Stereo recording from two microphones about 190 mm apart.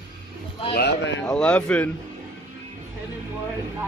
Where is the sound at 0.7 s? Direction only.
60° left (ahead or behind).